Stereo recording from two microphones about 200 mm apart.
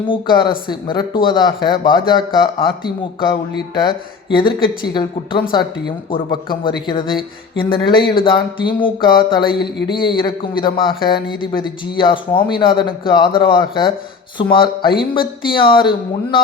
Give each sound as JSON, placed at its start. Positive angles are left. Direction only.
{"t": 0.0, "sound": "speech", "side_deg": 25}